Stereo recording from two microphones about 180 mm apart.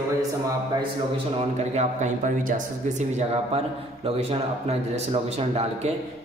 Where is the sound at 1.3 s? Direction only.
40° right (ahead or behind).